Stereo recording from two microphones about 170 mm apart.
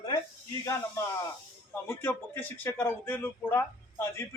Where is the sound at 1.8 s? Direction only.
15° left (ahead or behind).